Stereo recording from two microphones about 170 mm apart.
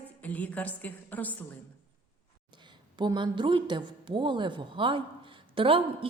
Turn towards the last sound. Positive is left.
turn(degrees=-30)  # may be behind; listen again after turning